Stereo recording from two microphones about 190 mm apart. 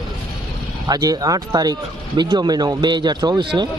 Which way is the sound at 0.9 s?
20° right (ahead or behind).